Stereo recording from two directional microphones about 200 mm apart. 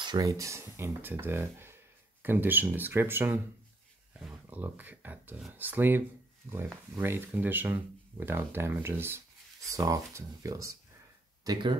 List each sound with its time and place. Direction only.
0.0 s speech: 20° right (ahead or behind)